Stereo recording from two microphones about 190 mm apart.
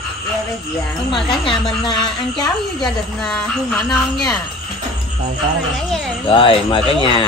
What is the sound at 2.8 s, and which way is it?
Speech, 5° left (ahead or behind).